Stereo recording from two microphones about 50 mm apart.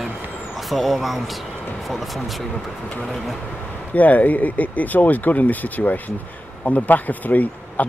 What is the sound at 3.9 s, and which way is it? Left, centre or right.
Speech, left.